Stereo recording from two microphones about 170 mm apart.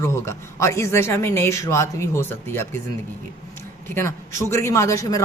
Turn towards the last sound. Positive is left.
turn(degrees=20)  # may be behind; listen again after turning